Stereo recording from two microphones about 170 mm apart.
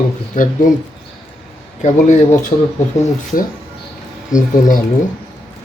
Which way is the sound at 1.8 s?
45° left (ahead or behind).